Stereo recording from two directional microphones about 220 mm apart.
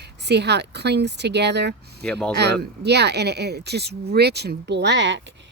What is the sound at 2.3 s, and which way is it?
Speech, 50° right (ahead or behind).